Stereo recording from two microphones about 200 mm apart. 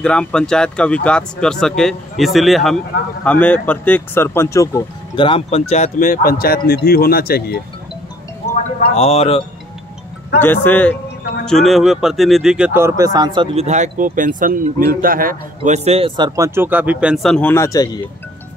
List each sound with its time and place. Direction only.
0.0 s speech: 5° left (ahead or behind); by 7.6 s 50° left (ahead or behind)
8.7 s a man's voice: 30° left (ahead or behind)
10.4 s speech: 10° left (ahead or behind); by 16.3 s 30° right (ahead or behind)
16.3 s speech: 15° right (ahead or behind); by 18.0 s 15° left (ahead or behind)